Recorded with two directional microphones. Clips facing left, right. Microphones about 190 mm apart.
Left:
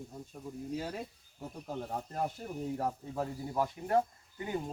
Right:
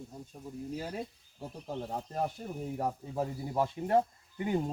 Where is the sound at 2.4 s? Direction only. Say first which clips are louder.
Right 1 dB; 5° right (ahead or behind).